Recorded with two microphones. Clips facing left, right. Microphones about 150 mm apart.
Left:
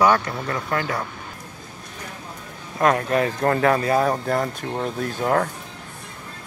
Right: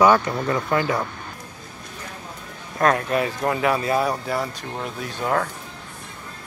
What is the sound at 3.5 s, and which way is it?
Speech, 10° right (ahead or behind).